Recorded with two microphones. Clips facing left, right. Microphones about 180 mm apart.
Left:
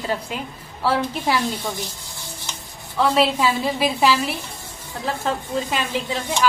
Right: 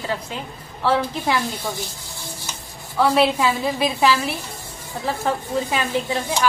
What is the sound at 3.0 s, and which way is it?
A woman's voice, centre (ahead or behind).